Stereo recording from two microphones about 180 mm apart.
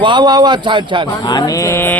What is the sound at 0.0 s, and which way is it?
A man's voice, 25° right (ahead or behind).